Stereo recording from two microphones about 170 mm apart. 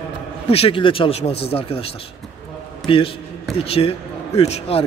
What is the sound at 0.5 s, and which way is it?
A man's voice, 30° left (ahead or behind).